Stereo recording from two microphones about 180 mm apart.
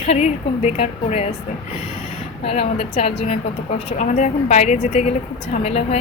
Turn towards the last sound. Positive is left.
turn(degrees=35)  # may be behind; listen again after turning